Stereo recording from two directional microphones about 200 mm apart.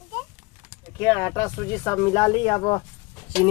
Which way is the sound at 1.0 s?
15° left (ahead or behind).